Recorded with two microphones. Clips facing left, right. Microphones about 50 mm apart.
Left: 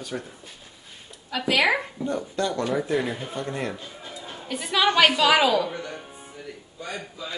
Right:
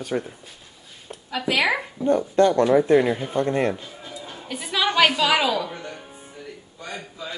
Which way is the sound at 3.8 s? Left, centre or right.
Centre.